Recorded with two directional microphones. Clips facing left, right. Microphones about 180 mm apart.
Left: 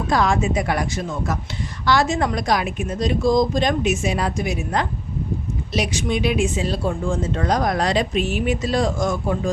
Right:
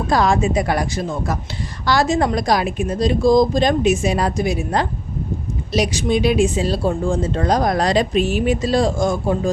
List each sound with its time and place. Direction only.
0.1 s a woman's voice: 35° right (ahead or behind)